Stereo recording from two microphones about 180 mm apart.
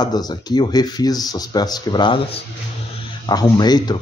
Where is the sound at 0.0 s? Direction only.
20° left (ahead or behind).